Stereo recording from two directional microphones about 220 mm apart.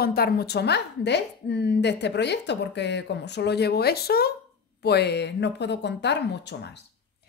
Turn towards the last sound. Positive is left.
turn(degrees=50)  # may be behind; listen again after turning